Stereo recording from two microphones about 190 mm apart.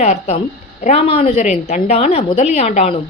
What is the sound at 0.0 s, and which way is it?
A woman's voice, 35° left (ahead or behind).